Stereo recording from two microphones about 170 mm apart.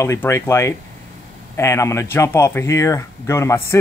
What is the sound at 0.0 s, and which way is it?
Speech, 15° left (ahead or behind).